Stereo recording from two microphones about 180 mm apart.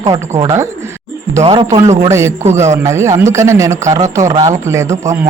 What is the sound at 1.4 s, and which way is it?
A man's voice, 30° right (ahead or behind).